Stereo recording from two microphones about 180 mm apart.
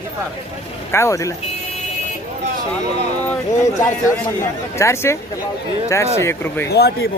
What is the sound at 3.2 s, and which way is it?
Speech, 15° left (ahead or behind).